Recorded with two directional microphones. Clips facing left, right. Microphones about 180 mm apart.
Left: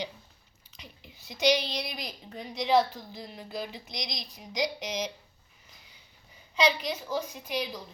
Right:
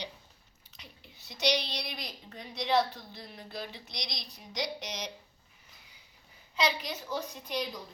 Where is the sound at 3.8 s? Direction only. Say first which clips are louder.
Left 4 dB; 90° left.